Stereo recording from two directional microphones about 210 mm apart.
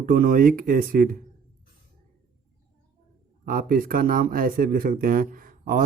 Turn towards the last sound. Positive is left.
turn(degrees=-40)  # may be behind; listen again after turning